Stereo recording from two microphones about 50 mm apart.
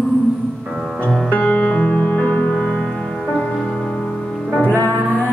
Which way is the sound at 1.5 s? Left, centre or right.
Left.